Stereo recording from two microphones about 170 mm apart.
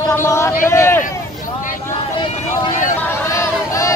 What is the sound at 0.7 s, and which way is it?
Speech, 15° left (ahead or behind).